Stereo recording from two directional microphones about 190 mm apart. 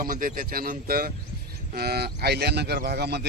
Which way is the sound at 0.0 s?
45° right (ahead or behind).